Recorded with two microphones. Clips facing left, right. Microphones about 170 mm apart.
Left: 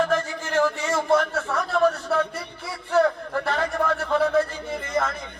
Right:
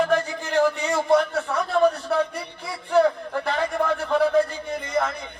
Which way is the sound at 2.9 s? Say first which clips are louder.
Right 1 dB; 10° right (ahead or behind).